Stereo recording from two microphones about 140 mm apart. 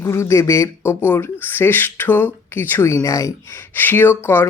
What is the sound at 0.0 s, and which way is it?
Speech, 20° left (ahead or behind).